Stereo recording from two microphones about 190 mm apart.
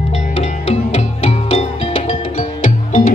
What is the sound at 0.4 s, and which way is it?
Music, 35° left (ahead or behind).